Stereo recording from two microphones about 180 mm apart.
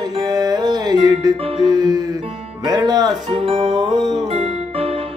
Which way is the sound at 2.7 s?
20° right (ahead or behind).